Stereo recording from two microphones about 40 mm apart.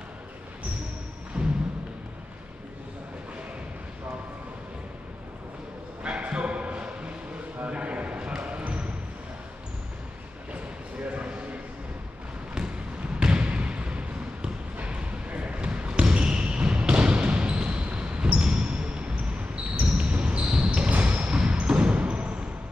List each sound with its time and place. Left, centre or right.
1.3 s music: right
6.0 s dog: right
7.6 s a sound: right
8.4 s basketball bounce: right
11.1 s a sound: right
13.2 s trickle: right
14.8 s basketball bounce: right